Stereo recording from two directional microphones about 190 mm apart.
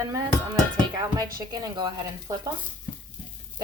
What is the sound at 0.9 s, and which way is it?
Speech, 20° right (ahead or behind).